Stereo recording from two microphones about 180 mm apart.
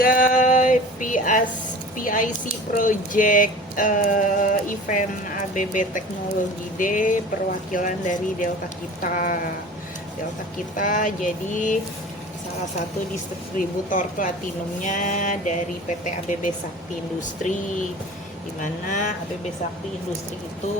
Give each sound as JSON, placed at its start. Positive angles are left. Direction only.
{"t": 0.0, "sound": "a sound", "side_deg": 50}
{"t": 2.0, "sound": "speech", "side_deg": 50}
{"t": 10.8, "sound": "speech", "side_deg": 45}
{"t": 13.6, "sound": "speech", "side_deg": 50}
{"t": 18.6, "sound": "speech", "side_deg": 45}